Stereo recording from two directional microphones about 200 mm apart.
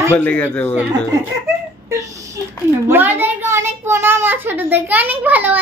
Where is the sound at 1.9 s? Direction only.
15° right (ahead or behind).